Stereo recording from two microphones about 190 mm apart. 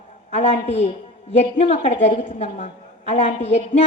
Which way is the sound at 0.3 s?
40° left (ahead or behind).